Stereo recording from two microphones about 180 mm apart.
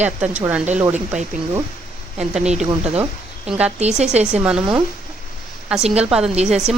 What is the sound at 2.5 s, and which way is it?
Speech, 35° right (ahead or behind).